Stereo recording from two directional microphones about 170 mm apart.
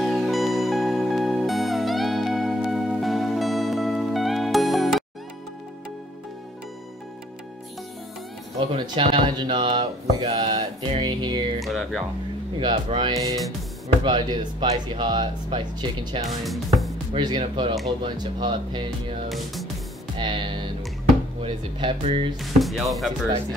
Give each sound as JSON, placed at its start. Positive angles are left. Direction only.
{"t": 0.0, "sound": "music", "side_deg": 0}
{"t": 8.5, "sound": "speech", "side_deg": -30}
{"t": 11.6, "sound": "speech", "side_deg": 0}
{"t": 12.5, "sound": "speech", "side_deg": -30}
{"t": 16.4, "sound": "speech", "side_deg": 0}
{"t": 17.1, "sound": "speech", "side_deg": -30}
{"t": 19.2, "sound": "music", "side_deg": 0}
{"t": 20.2, "sound": "music", "side_deg": -30}
{"t": 21.4, "sound": "speech", "side_deg": -30}
{"t": 22.4, "sound": "speech", "side_deg": 0}